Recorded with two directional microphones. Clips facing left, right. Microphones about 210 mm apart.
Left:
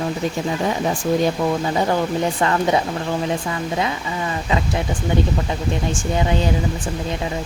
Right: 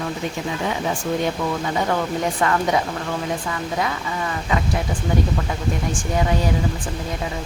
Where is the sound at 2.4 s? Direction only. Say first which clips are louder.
Left 1 dB; 30° left (ahead or behind).